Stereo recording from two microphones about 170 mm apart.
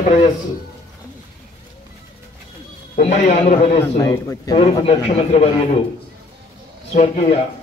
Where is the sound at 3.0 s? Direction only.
40° left (ahead or behind).